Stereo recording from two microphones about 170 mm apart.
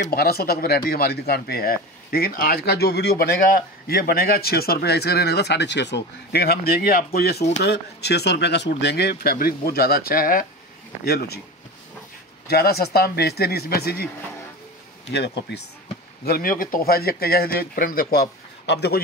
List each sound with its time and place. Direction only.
0.1 s speech: 65° left (ahead or behind)
7.5 s speech: 80° left; by 10.4 s 55° left (ahead or behind)
11.1 s speech: 70° left (ahead or behind)
12.4 s speech: 65° left (ahead or behind)
15.0 s speech: 80° left
16.3 s speech: 55° left (ahead or behind)